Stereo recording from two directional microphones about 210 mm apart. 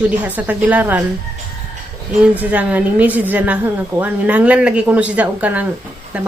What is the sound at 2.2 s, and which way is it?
Speech, 5° right (ahead or behind).